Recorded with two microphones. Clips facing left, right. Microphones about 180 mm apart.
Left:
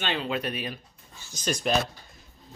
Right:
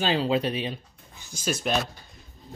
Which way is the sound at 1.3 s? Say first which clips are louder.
Left 1 dB; 5° right (ahead or behind).